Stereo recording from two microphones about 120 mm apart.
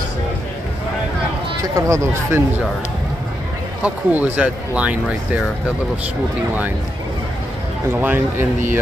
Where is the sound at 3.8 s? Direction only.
10° right (ahead or behind).